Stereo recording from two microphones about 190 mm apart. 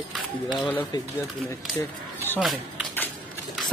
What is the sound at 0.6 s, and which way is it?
Speech, 10° left (ahead or behind).